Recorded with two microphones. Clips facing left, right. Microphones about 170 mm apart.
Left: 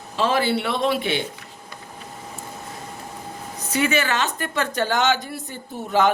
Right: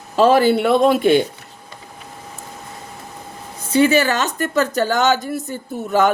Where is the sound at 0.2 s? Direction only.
45° right (ahead or behind).